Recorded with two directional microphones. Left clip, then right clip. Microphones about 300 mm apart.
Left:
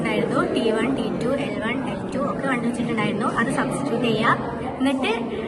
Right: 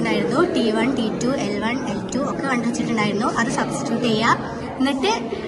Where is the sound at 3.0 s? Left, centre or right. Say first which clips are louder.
Right 2 dB; right.